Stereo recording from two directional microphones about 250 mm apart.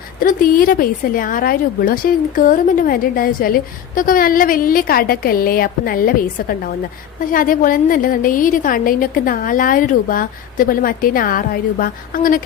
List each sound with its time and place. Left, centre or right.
0.2 s a woman's voice: left